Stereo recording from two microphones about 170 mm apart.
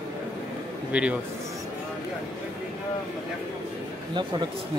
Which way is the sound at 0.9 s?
5° right (ahead or behind).